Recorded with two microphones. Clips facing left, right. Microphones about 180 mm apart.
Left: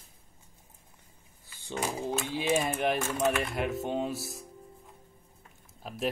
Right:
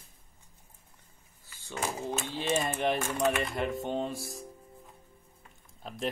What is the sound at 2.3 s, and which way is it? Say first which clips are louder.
Speech: left 2 dB; 10° left (ahead or behind).